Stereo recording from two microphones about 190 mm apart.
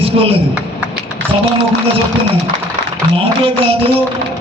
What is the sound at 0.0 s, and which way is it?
Speech, 30° right (ahead or behind).